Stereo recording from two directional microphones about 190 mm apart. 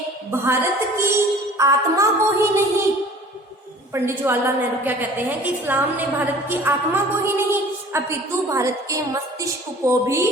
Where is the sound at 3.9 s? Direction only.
10° right (ahead or behind).